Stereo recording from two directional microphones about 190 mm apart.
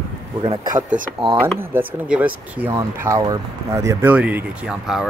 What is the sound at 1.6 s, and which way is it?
Speech, 10° right (ahead or behind).